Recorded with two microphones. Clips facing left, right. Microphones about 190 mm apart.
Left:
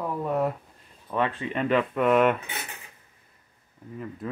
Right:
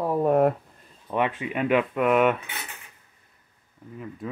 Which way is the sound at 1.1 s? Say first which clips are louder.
Right 1 dB; 15° right (ahead or behind).